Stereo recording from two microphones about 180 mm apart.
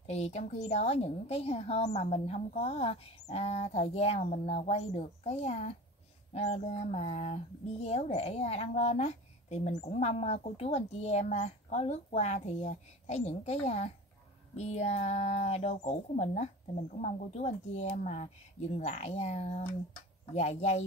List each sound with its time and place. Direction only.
0.0 s speech: 35° left (ahead or behind)